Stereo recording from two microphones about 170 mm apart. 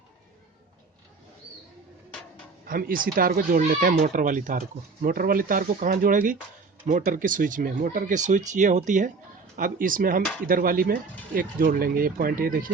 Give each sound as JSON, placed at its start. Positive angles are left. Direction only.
{"t": 2.6, "sound": "speech", "side_deg": -55}